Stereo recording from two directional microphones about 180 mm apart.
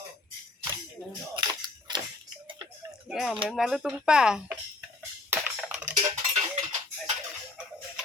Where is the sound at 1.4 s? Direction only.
25° right (ahead or behind).